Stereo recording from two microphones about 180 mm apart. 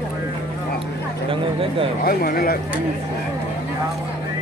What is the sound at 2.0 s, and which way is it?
Speech, 55° left (ahead or behind).